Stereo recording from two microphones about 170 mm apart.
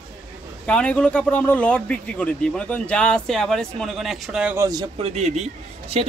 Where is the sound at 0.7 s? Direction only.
5° left (ahead or behind); by 4.7 s 10° right (ahead or behind).